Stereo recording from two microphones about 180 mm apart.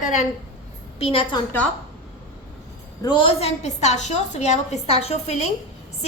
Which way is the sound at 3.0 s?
25° left (ahead or behind).